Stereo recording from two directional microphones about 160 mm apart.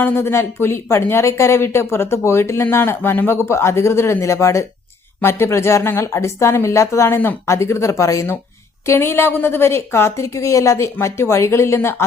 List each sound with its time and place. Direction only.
0.0 s speech: 15° left (ahead or behind)